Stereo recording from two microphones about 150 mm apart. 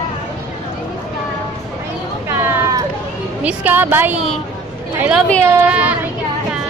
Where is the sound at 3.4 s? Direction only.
10° right (ahead or behind).